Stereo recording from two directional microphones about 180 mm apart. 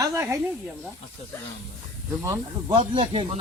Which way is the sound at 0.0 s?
15° right (ahead or behind).